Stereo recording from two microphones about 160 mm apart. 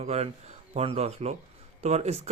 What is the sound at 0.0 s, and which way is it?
A man's voice, 40° right (ahead or behind).